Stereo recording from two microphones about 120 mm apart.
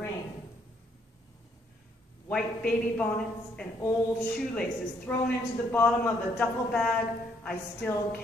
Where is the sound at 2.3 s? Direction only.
10° left (ahead or behind).